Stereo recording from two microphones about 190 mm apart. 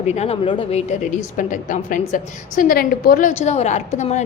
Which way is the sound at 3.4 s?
35° left (ahead or behind).